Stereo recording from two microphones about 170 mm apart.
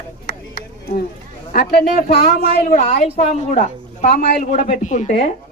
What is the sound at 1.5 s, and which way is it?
A man's voice, 60° left (ahead or behind).